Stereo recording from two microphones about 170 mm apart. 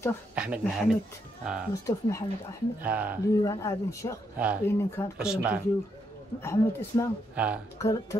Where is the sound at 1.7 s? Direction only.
20° left (ahead or behind).